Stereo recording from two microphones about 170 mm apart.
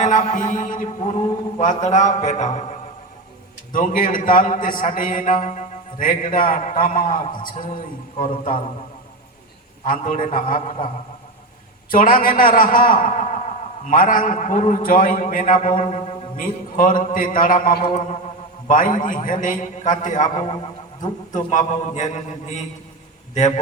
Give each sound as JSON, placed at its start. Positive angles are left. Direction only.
{"t": 0.0, "sound": "a man's voice", "side_deg": 45}
{"t": 3.7, "sound": "a man's voice", "side_deg": 50}
{"t": 9.8, "sound": "a man's voice", "side_deg": 50}
{"t": 11.9, "sound": "a man's voice", "side_deg": 55}
{"t": 15.9, "sound": "a man's voice", "side_deg": 35}
{"t": 16.4, "sound": "a man's voice", "side_deg": 55}
{"t": 20.4, "sound": "speech", "side_deg": 30}
{"t": 21.3, "sound": "a man's voice", "side_deg": 45}